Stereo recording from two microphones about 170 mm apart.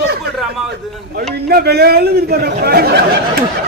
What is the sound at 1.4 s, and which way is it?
Speech, 65° right (ahead or behind).